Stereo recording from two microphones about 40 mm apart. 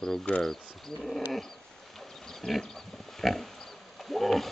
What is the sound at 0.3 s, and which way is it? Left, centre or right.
Speech, left.